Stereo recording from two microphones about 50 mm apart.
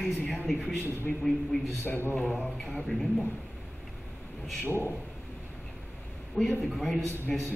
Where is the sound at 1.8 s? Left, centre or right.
Left.